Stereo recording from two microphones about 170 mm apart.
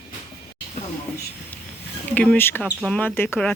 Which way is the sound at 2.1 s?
10° left (ahead or behind).